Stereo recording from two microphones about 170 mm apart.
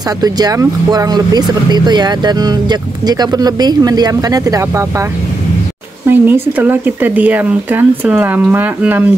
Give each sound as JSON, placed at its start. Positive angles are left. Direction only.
{"t": 0.2, "sound": "speech", "side_deg": -20}
{"t": 6.0, "sound": "speech", "side_deg": -10}